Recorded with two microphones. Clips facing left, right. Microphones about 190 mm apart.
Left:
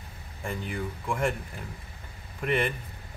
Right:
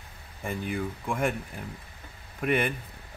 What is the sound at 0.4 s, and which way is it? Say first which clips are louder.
Speech: right 2 dB; 5° right (ahead or behind).